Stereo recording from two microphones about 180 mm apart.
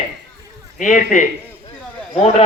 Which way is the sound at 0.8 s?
45° left (ahead or behind).